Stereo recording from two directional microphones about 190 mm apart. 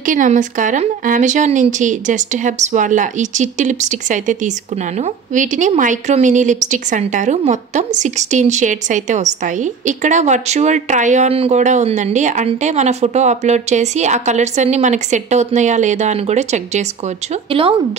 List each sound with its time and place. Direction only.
0.0 s speech: 45° right (ahead or behind)